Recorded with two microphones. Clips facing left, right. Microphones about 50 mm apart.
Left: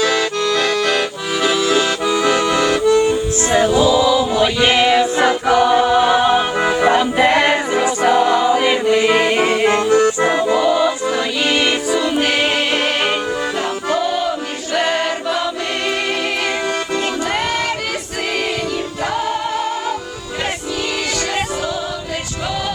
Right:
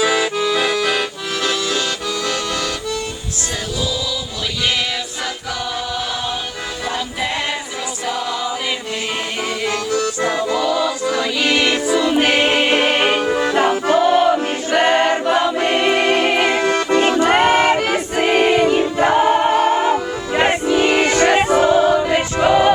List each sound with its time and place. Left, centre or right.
0.0 s accordion: centre
2.2 s accordion: left
3.5 s choir: left
6.8 s music: left
8.0 s choir: left
8.9 s accordion: left
12.1 s music: centre
13.9 s choir: right
15.9 s music: right